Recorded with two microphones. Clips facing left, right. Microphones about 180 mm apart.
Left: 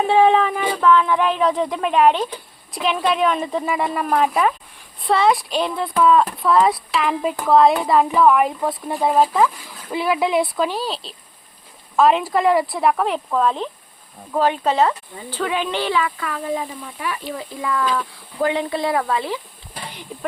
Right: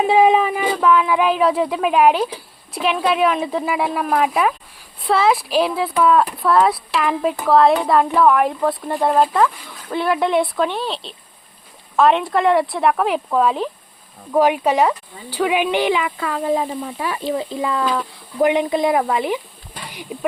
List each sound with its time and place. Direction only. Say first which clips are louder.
0.0 s speech: right 1 dB; 10° right (ahead or behind)